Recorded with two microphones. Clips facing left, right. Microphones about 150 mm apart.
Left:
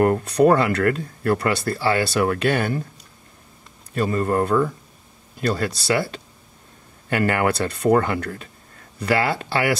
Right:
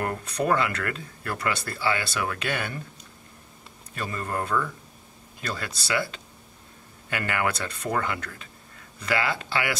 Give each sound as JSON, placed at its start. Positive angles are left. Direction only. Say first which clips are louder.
{"t": 0.0, "sound": "speech", "louder": "left 11 dB", "side_deg": 35}
{"t": 3.9, "sound": "speech", "louder": "left 10 dB", "side_deg": 35}